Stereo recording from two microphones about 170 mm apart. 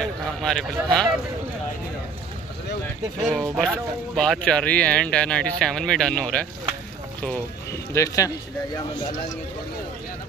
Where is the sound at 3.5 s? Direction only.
Centre (ahead or behind).